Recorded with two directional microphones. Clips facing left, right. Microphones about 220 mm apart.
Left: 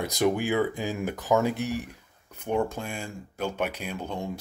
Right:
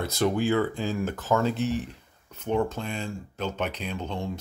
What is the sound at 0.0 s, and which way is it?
Speech, 15° left (ahead or behind).